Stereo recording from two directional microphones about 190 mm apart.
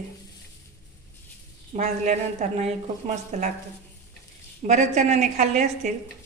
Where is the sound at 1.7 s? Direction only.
40° right (ahead or behind).